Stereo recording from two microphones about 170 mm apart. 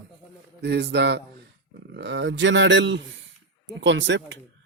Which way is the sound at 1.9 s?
90° right.